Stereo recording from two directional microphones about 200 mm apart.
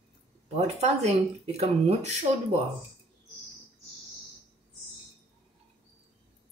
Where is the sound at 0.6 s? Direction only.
35° right (ahead or behind).